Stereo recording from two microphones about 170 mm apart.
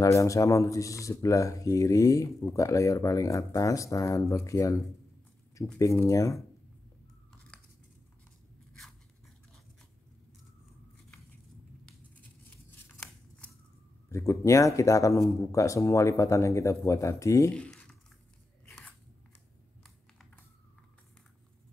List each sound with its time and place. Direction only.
0.0 s speech: 20° left (ahead or behind)
14.0 s speech: 15° left (ahead or behind)
17.5 s a sound: 5° left (ahead or behind)